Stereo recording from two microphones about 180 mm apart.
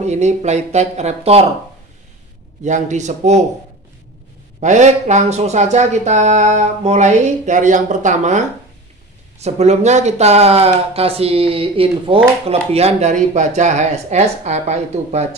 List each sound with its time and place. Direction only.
0.0 s speech: 40° right (ahead or behind)
2.6 s speech: 40° right (ahead or behind)
4.6 s speech: 40° right (ahead or behind)